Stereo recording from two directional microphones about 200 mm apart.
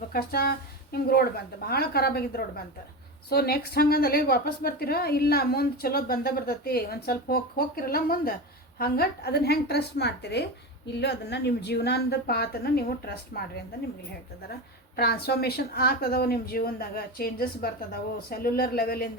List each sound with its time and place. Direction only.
0.1 s a woman's voice: 45° left (ahead or behind)
14.9 s a woman's voice: 50° left (ahead or behind)